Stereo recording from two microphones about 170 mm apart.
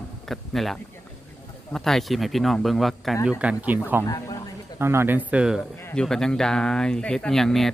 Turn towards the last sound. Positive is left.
turn(degrees=0)  # may be behind; listen again after turning